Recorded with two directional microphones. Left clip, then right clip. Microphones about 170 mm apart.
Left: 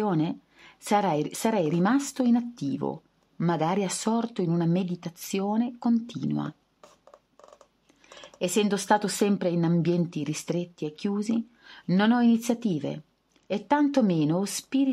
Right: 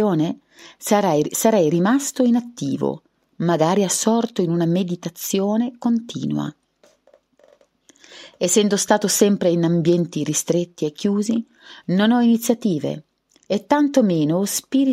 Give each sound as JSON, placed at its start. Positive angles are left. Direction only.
{"t": 0.0, "sound": "a woman's voice", "side_deg": -30}
{"t": 8.0, "sound": "a woman's voice", "side_deg": -35}